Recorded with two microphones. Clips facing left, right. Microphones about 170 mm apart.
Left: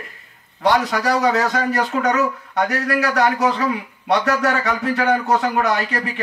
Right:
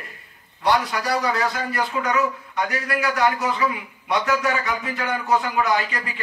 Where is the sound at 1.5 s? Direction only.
70° left (ahead or behind).